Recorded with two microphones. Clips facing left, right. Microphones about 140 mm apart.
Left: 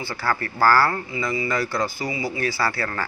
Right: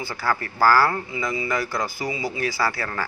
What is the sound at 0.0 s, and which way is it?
Speech, 15° right (ahead or behind).